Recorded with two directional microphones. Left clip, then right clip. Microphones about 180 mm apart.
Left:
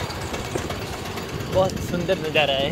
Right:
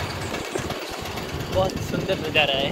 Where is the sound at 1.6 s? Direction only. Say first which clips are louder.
Left 2 dB; 60° left (ahead or behind).